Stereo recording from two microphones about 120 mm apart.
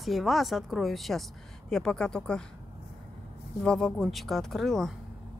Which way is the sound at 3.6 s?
5° left (ahead or behind).